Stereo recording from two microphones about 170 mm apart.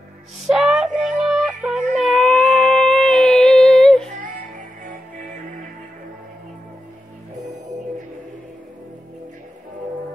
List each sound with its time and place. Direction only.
0.5 s child singing: 5° right (ahead or behind)
2.0 s a sound: centre (ahead or behind)
4.2 s music: 50° right (ahead or behind)